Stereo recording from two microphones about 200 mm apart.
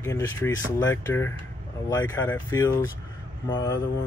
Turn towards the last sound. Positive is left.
turn(degrees=20)  # may be behind; listen again after turning